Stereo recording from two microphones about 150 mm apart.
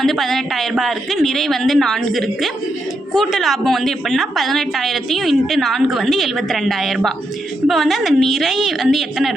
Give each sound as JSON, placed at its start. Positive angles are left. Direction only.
{"t": 0.0, "sound": "a woman's voice", "side_deg": 0}